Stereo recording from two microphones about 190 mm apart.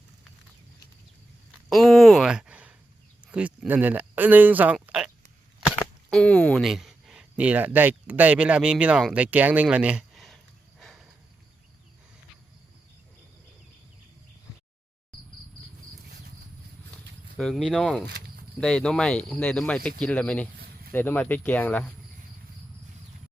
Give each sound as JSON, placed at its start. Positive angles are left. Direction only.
{"t": 1.7, "sound": "speech", "side_deg": 0}
{"t": 17.3, "sound": "speech", "side_deg": 0}
{"t": 18.0, "sound": "insect", "side_deg": -65}
{"t": 18.6, "sound": "speech", "side_deg": 5}